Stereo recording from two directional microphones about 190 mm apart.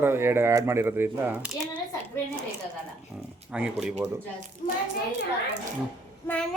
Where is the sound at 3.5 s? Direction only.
5° right (ahead or behind).